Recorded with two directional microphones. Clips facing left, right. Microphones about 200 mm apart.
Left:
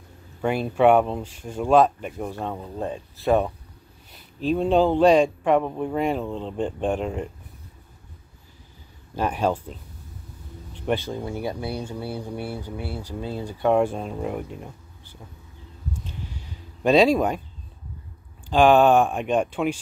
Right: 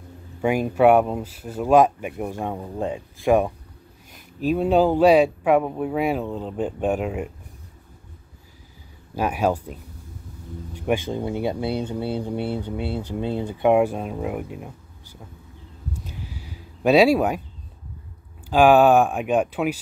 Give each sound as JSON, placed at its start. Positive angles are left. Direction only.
{"t": 0.4, "sound": "speech", "side_deg": -10}
{"t": 9.1, "sound": "speech", "side_deg": -10}
{"t": 11.1, "sound": "speech", "side_deg": -20}
{"t": 16.0, "sound": "a sound", "side_deg": -5}
{"t": 18.5, "sound": "speech", "side_deg": -5}